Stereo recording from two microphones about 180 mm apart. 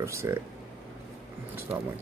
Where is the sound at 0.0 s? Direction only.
15° right (ahead or behind).